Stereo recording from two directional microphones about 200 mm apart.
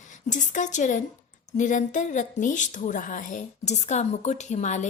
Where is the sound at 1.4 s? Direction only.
40° left (ahead or behind).